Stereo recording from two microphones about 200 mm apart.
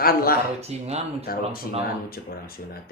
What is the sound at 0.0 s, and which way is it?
Speech, 50° left (ahead or behind).